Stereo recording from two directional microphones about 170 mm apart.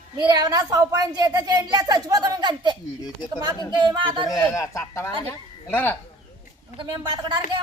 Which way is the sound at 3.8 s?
30° right (ahead or behind).